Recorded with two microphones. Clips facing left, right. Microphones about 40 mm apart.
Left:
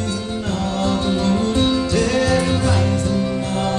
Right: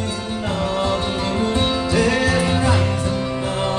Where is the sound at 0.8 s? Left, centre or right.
Centre.